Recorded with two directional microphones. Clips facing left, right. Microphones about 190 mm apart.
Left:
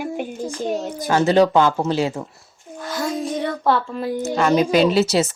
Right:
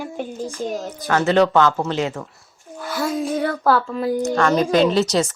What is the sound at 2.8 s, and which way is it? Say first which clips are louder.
Speech: right 1 dB; 5° right (ahead or behind).